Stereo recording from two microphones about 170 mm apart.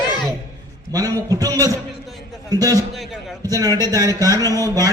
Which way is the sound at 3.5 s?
20° right (ahead or behind).